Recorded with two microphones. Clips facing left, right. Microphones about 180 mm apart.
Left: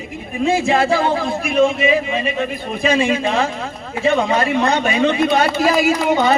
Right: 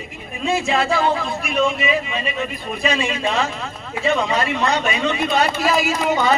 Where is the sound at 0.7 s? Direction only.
50° left (ahead or behind).